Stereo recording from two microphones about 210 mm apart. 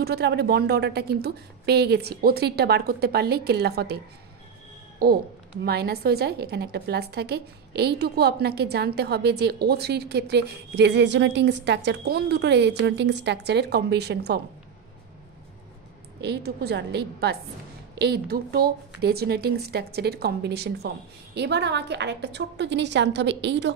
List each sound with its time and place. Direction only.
0.0 s a woman's voice: 50° right (ahead or behind)
16.2 s a woman's voice: 50° right (ahead or behind)